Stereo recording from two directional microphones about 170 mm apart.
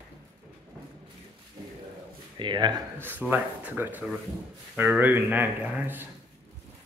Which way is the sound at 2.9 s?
10° right (ahead or behind).